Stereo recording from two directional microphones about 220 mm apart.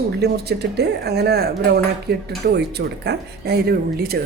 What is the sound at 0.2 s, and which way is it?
Speech, 50° right (ahead or behind).